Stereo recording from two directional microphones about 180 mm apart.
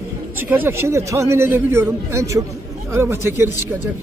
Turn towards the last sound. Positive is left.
turn(degrees=-15)  # may be behind; listen again after turning